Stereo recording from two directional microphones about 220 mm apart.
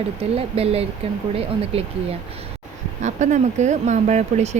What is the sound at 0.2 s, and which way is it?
Speech, 25° right (ahead or behind).